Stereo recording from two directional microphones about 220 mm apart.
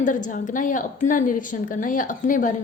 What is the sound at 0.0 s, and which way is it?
A woman's voice, 35° left (ahead or behind).